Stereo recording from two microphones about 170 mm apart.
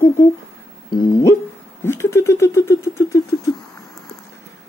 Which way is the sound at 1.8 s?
15° left (ahead or behind).